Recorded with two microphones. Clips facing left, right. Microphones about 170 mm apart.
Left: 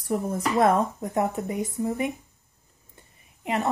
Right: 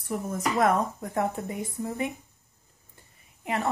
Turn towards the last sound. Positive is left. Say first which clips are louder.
# left 2 dB
turn(degrees=20)  # may be behind; listen again after turning